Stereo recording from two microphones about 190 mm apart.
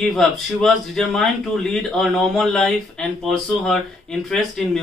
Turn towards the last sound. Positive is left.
turn(degrees=0)  # may be behind; listen again after turning